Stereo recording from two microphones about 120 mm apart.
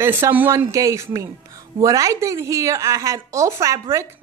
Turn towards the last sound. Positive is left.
turn(degrees=-25)  # may be behind; listen again after turning